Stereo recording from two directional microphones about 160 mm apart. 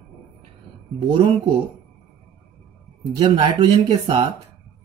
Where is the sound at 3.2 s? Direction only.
35° right (ahead or behind).